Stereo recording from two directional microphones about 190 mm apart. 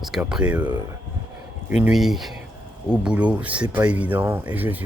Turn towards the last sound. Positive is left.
turn(degrees=-10)  # may be behind; listen again after turning